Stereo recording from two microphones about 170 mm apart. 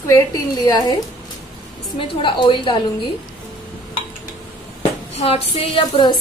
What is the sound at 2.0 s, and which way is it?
Speech, 30° left (ahead or behind).